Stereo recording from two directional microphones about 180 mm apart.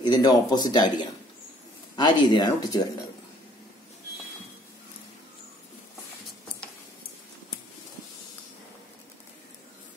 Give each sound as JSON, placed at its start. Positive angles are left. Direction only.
{"t": 0.0, "sound": "speech", "side_deg": 25}